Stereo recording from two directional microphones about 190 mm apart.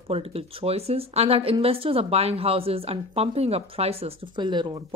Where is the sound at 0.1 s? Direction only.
30° right (ahead or behind).